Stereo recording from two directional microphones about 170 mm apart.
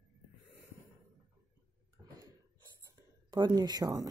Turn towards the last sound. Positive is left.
turn(degrees=-20)  # may be behind; listen again after turning